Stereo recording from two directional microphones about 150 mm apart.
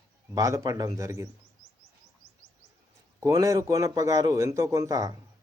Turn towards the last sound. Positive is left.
turn(degrees=-20)  # may be behind; listen again after turning